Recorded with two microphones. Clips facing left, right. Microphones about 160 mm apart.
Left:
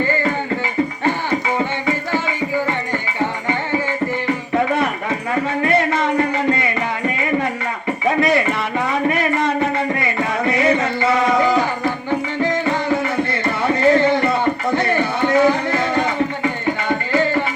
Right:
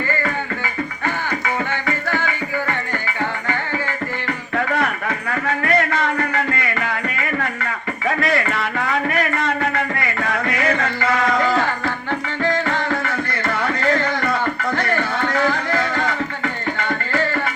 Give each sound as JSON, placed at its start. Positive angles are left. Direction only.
{"t": 1.0, "sound": "music", "side_deg": 20}
{"t": 4.3, "sound": "a sound", "side_deg": 20}
{"t": 12.4, "sound": "music", "side_deg": 20}